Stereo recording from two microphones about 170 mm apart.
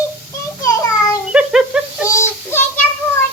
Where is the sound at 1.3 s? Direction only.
5° right (ahead or behind).